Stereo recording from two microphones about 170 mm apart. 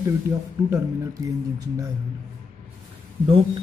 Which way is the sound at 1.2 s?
20° right (ahead or behind).